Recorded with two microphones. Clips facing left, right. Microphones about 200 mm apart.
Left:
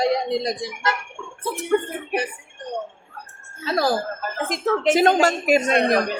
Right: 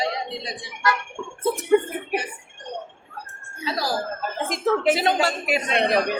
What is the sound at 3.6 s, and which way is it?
Speech, 55° left (ahead or behind).